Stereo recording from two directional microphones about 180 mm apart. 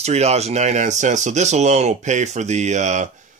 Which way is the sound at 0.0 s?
35° right (ahead or behind).